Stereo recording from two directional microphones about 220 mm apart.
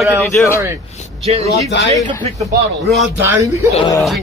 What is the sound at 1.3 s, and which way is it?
Speech, 30° right (ahead or behind).